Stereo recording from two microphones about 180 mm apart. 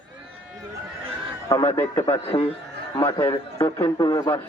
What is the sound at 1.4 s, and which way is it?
Speech, 15° left (ahead or behind).